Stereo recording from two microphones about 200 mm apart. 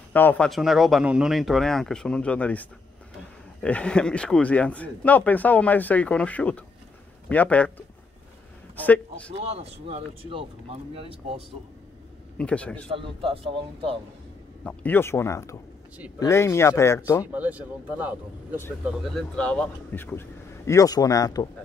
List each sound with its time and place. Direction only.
0.1 s a man's voice: 10° left (ahead or behind)
9.6 s speech: 30° right (ahead or behind)
12.4 s speech: 5° left (ahead or behind)
12.9 s speech: 25° right (ahead or behind)
14.6 s speech: 5° left (ahead or behind)
17.3 s speech: 10° right (ahead or behind); by 21.5 s 20° left (ahead or behind)